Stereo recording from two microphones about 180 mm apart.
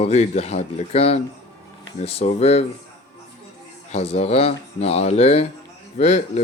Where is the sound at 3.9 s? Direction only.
35° left (ahead or behind).